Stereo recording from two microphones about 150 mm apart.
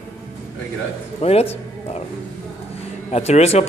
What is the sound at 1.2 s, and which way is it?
Music, 40° left (ahead or behind).